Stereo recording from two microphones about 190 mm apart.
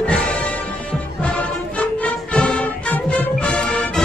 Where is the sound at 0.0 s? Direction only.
Centre (ahead or behind).